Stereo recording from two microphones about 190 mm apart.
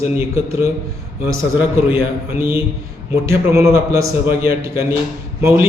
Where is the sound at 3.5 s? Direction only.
15° right (ahead or behind).